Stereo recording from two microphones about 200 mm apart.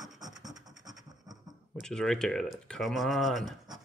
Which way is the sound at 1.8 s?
5° left (ahead or behind).